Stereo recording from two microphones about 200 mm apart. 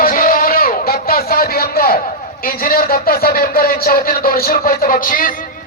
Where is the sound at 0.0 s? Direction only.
45° left (ahead or behind).